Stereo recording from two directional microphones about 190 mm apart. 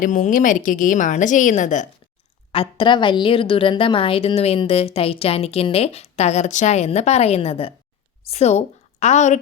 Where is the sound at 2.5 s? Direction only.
30° left (ahead or behind).